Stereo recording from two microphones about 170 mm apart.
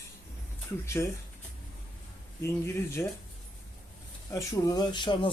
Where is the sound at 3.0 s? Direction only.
15° left (ahead or behind).